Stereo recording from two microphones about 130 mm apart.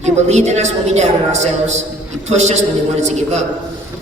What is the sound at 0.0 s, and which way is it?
A woman's voice, 60° right (ahead or behind).